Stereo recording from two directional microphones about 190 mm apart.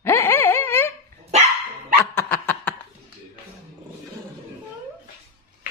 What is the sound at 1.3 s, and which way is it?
Dog, 35° right (ahead or behind).